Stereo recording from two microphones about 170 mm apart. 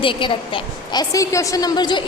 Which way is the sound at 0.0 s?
30° left (ahead or behind).